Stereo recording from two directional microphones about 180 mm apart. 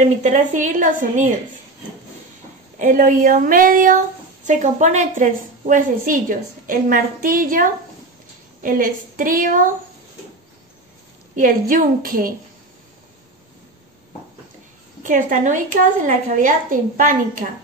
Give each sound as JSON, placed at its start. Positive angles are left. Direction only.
{"t": 0.2, "sound": "a woman's voice", "side_deg": -40}
{"t": 2.8, "sound": "a woman's voice", "side_deg": -45}
{"t": 11.3, "sound": "a woman's voice", "side_deg": -50}
{"t": 15.0, "sound": "a woman's voice", "side_deg": -45}